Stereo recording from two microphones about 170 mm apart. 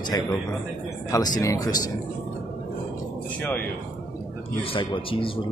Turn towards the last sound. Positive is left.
turn(degrees=30)  # may be behind; listen again after turning